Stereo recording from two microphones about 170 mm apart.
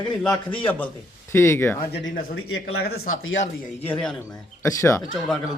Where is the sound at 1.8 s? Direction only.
65° left (ahead or behind).